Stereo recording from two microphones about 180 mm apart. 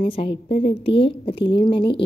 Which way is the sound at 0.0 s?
30° left (ahead or behind).